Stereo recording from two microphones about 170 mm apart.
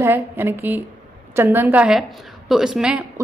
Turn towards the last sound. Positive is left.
turn(degrees=-5)  # may be behind; listen again after turning